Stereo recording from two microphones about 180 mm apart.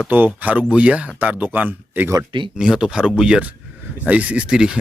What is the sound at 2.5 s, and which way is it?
Speech, 5° right (ahead or behind).